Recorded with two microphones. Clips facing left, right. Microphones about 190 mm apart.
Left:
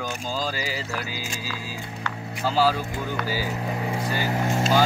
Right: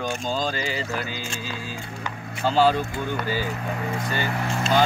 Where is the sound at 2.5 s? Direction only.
5° left (ahead or behind).